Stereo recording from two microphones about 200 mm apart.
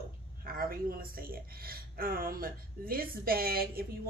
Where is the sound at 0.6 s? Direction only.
45° right (ahead or behind).